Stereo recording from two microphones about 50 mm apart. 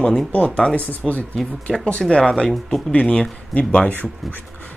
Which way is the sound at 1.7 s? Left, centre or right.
Centre.